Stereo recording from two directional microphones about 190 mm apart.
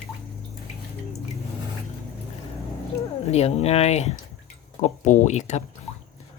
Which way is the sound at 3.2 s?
35° left (ahead or behind).